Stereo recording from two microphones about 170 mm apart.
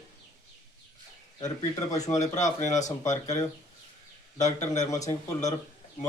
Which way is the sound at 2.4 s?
45° left (ahead or behind).